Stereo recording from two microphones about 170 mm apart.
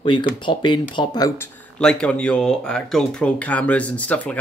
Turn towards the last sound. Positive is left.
turn(degrees=10)  # may be behind; listen again after turning